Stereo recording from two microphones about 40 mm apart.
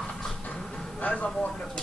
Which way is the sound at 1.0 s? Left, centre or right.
Left.